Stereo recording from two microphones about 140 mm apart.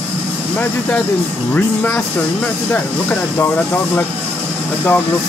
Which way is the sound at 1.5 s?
10° left (ahead or behind).